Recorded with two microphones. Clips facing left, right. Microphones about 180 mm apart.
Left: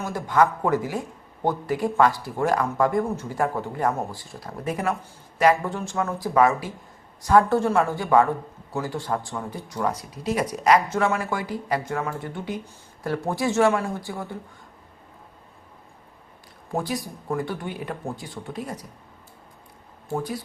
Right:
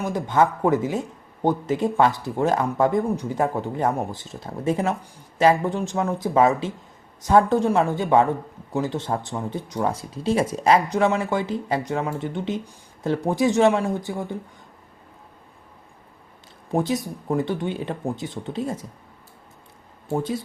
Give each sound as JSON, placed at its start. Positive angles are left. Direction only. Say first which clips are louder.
{"t": 0.0, "sound": "speech", "louder": "right 1 dB", "side_deg": -20}
{"t": 16.7, "sound": "speech", "louder": "right 5 dB", "side_deg": -20}
{"t": 20.1, "sound": "speech", "louder": "right 3 dB", "side_deg": -20}